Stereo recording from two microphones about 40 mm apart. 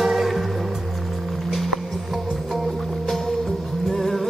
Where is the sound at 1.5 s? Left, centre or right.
Centre.